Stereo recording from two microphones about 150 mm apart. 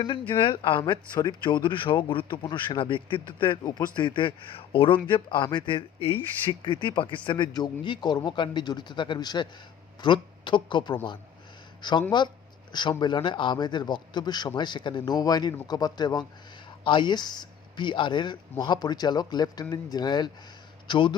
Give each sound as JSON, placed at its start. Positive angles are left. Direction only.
{"t": 0.0, "sound": "speech", "side_deg": 35}